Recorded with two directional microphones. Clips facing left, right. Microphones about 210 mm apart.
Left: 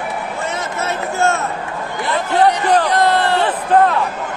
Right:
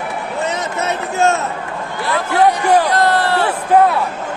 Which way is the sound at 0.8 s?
20° right (ahead or behind).